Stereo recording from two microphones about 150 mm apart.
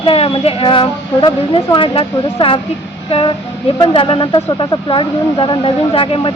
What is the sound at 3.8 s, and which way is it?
Speech, 35° left (ahead or behind).